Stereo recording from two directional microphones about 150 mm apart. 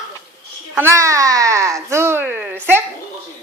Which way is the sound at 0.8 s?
20° right (ahead or behind).